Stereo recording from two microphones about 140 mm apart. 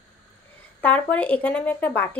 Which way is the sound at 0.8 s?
10° left (ahead or behind).